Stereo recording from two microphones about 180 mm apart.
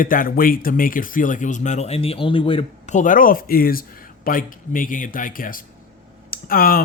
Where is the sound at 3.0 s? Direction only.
50° left (ahead or behind).